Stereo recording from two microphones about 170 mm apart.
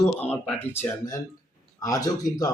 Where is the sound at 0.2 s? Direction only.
10° left (ahead or behind).